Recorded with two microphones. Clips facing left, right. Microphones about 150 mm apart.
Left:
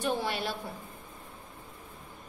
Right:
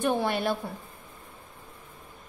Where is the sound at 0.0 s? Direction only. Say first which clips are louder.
Right 5 dB; 55° right (ahead or behind).